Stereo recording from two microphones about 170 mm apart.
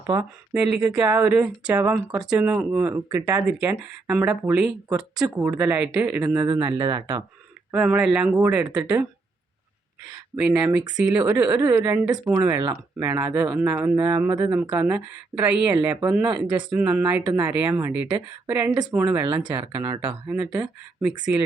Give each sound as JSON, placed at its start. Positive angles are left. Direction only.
{"t": 0.5, "sound": "speech", "side_deg": -5}
{"t": 6.5, "sound": "speech", "side_deg": -30}
{"t": 7.7, "sound": "speech", "side_deg": -5}
{"t": 10.3, "sound": "speech", "side_deg": -5}
{"t": 18.9, "sound": "speech", "side_deg": -10}
{"t": 19.2, "sound": "speech", "side_deg": -25}
{"t": 20.2, "sound": "speech", "side_deg": -10}